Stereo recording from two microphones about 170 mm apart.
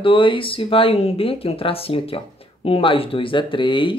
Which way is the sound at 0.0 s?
30° left (ahead or behind).